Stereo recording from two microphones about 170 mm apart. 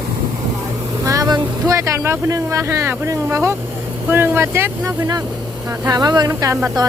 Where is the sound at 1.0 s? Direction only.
20° right (ahead or behind).